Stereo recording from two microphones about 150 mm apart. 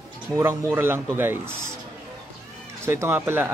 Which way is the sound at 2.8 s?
15° right (ahead or behind).